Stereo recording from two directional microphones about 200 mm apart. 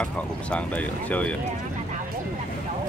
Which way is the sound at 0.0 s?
5° left (ahead or behind).